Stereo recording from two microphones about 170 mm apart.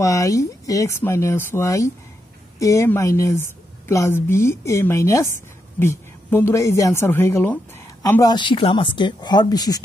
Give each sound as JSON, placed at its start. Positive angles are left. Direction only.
{"t": 0.0, "sound": "speech", "side_deg": 20}